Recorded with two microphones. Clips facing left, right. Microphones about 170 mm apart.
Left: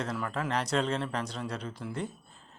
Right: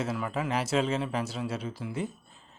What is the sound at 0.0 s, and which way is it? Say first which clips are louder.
A man's voice: right 2 dB; 5° right (ahead or behind).